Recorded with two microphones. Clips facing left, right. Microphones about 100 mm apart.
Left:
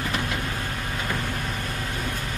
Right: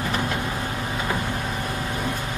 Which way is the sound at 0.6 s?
20° right (ahead or behind).